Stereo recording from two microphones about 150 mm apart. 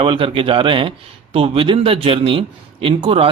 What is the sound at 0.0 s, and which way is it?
Speech, 35° right (ahead or behind).